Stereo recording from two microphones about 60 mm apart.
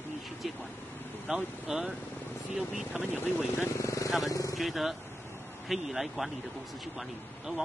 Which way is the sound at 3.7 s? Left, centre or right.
Left.